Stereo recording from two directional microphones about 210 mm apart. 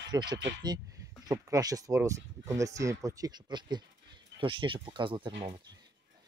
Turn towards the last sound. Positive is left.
turn(degrees=-25)  # may be behind; listen again after turning